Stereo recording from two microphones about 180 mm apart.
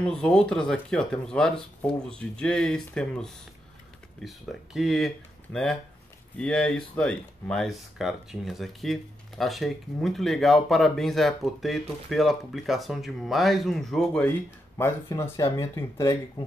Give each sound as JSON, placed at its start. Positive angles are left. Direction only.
{"t": 0.0, "sound": "speech", "side_deg": 5}